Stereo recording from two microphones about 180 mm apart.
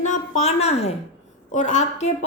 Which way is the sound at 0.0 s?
40° left (ahead or behind).